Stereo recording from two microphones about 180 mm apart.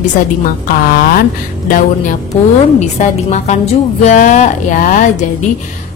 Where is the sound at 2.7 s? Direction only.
40° left (ahead or behind).